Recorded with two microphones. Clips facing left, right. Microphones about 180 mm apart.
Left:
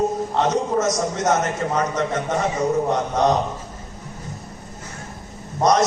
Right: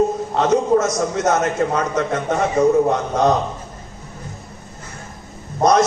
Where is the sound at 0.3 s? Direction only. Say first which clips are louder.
Right 6 dB; 60° right (ahead or behind).